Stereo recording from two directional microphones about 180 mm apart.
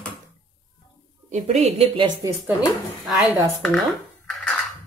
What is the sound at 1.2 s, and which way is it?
Speech, 40° right (ahead or behind).